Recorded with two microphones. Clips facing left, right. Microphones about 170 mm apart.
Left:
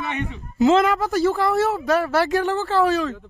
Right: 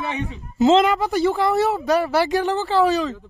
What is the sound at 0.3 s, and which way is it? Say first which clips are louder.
Speech: right 1 dB; 25° right (ahead or behind).